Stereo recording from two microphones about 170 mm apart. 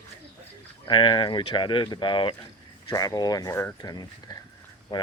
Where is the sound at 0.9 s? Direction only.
30° left (ahead or behind).